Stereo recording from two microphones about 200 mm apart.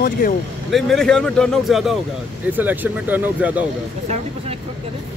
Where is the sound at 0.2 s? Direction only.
45° left (ahead or behind).